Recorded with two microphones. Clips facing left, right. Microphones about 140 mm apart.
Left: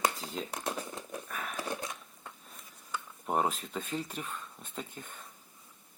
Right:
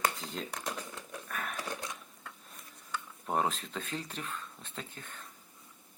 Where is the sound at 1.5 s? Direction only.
10° left (ahead or behind).